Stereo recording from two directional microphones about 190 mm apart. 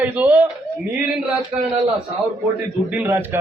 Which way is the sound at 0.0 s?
10° right (ahead or behind).